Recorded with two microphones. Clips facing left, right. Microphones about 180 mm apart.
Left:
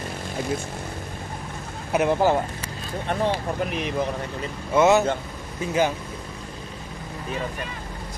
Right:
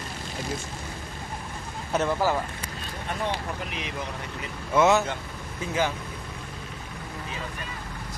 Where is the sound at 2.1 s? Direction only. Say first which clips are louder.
Left 6 dB; 25° left (ahead or behind).